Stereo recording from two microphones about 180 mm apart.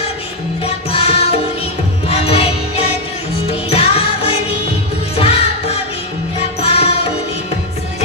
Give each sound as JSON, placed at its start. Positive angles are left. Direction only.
{"t": 0.7, "sound": "music", "side_deg": 35}